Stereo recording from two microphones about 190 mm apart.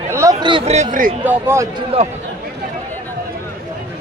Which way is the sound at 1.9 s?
30° right (ahead or behind).